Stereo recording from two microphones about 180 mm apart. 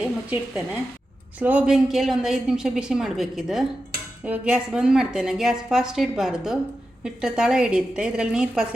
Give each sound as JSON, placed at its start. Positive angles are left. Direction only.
{"t": 0.0, "sound": "a woman's voice", "side_deg": -5}